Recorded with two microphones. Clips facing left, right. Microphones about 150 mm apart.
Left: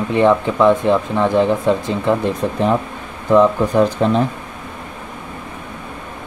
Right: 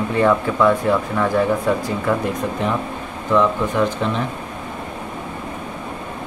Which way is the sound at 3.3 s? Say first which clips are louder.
Left 5 dB; 35° left (ahead or behind).